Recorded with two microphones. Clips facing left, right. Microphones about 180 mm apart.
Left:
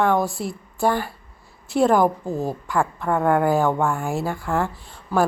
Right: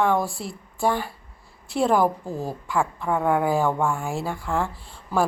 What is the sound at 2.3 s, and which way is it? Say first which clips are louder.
Speech: left 4 dB; 25° left (ahead or behind).